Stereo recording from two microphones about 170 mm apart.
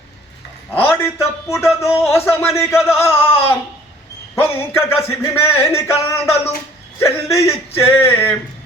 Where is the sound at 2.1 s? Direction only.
15° left (ahead or behind).